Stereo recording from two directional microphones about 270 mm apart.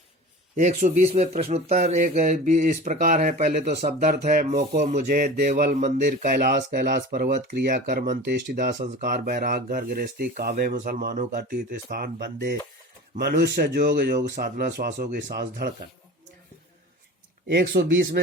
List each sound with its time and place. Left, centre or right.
0.5 s speech: right
17.5 s speech: right